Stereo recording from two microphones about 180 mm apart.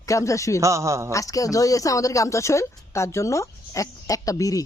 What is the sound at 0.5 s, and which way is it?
Speech, 15° right (ahead or behind).